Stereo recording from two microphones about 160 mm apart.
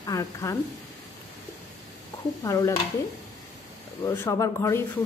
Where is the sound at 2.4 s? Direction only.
20° left (ahead or behind).